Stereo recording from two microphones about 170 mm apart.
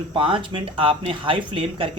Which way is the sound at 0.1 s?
30° right (ahead or behind).